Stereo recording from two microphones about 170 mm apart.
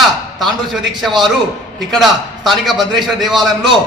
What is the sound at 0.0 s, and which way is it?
A man's voice, centre (ahead or behind).